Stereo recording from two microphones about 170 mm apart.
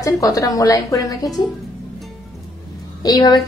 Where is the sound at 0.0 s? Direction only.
20° left (ahead or behind).